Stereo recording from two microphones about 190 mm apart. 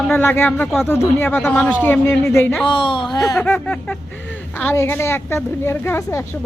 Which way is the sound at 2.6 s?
25° left (ahead or behind).